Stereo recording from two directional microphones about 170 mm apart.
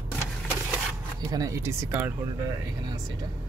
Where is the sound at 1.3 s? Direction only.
20° right (ahead or behind).